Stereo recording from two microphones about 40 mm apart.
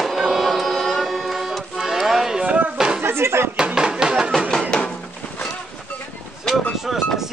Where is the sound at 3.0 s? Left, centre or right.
Right.